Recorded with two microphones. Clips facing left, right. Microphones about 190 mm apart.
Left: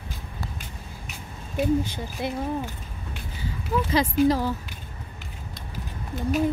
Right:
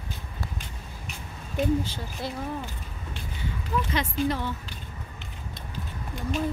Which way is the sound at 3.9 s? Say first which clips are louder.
Left 9 dB; 35° left (ahead or behind).